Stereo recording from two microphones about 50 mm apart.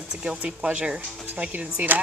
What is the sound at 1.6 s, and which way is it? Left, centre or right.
Speech, right.